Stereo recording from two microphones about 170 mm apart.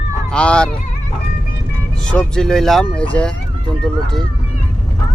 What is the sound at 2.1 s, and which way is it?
Speech, 5° left (ahead or behind).